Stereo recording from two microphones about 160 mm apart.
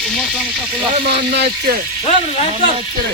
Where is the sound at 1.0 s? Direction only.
90° right.